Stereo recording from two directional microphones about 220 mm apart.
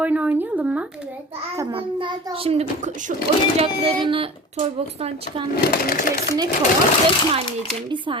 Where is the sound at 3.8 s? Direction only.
25° right (ahead or behind).